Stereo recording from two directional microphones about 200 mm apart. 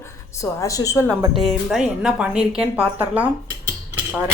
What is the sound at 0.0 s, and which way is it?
A woman's voice, 15° left (ahead or behind).